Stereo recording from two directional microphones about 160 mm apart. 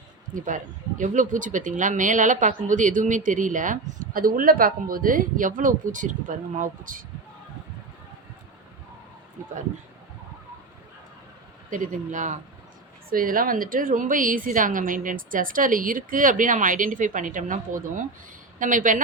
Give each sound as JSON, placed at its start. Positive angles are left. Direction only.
{"t": 0.3, "sound": "speech", "side_deg": -55}
{"t": 11.7, "sound": "a woman's voice", "side_deg": -55}